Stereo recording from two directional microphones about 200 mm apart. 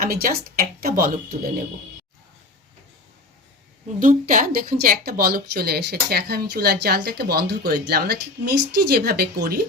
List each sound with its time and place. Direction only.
0.0 s a woman's voice: 45° right (ahead or behind)
4.0 s a woman's voice: 40° right (ahead or behind)